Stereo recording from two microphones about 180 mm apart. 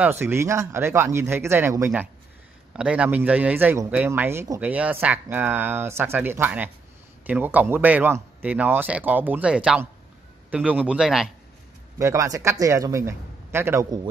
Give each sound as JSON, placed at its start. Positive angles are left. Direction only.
{"t": 0.0, "sound": "speech", "side_deg": -10}
{"t": 12.0, "sound": "speech", "side_deg": -15}